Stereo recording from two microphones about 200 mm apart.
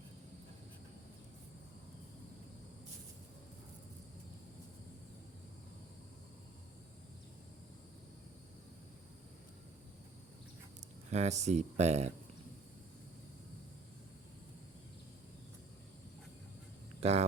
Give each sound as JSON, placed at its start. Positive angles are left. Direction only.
{"t": 11.1, "sound": "speech", "side_deg": -35}
{"t": 17.0, "sound": "speech", "side_deg": -30}